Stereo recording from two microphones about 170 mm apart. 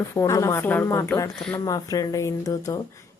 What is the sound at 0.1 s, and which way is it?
Speech, 20° left (ahead or behind).